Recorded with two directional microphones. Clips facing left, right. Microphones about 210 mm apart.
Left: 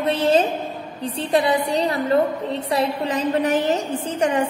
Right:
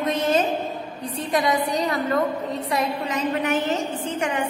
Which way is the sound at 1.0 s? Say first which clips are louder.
Left 4 dB; 30° left (ahead or behind).